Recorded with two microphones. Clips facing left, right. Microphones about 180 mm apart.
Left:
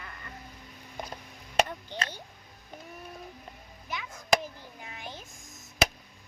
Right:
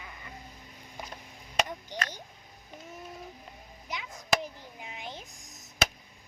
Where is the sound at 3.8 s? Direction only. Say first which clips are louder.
Left 1 dB; 20° right (ahead or behind).